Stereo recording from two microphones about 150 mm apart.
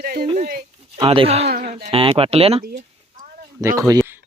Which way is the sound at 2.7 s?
70° right (ahead or behind).